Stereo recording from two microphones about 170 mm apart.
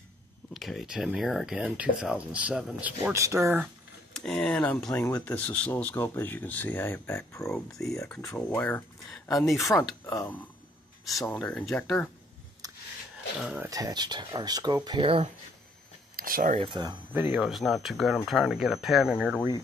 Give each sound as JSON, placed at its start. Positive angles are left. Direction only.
{"t": 0.5, "sound": "speech", "side_deg": 0}
{"t": 4.1, "sound": "speech", "side_deg": 5}
{"t": 4.9, "sound": "speech", "side_deg": 15}
{"t": 7.5, "sound": "speech", "side_deg": 0}
{"t": 8.2, "sound": "speech", "side_deg": 15}
{"t": 11.3, "sound": "speech", "side_deg": 5}
{"t": 12.6, "sound": "a sound", "side_deg": -20}
{"t": 13.4, "sound": "speech", "side_deg": -5}
{"t": 13.7, "sound": "speech", "side_deg": -20}
{"t": 16.2, "sound": "speech", "side_deg": -55}
{"t": 16.5, "sound": "speech", "side_deg": -30}
{"t": 17.1, "sound": "speech", "side_deg": -10}
{"t": 17.4, "sound": "speech", "side_deg": 0}